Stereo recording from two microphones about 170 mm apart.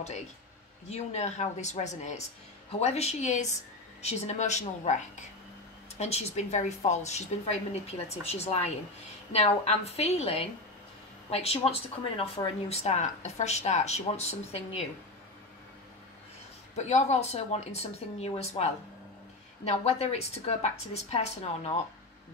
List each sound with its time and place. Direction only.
0.8 s a woman's voice: 40° left (ahead or behind)
16.7 s a woman's voice: 40° left (ahead or behind)